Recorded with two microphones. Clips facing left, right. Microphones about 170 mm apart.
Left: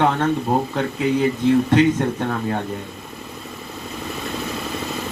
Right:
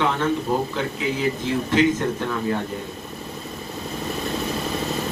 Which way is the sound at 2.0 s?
60° left (ahead or behind).